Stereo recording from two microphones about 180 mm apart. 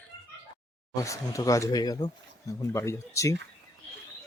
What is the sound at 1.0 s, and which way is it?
Speech, 15° left (ahead or behind).